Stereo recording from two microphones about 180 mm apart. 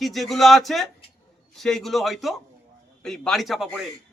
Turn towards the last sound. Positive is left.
turn(degrees=0)  # may be behind; listen again after turning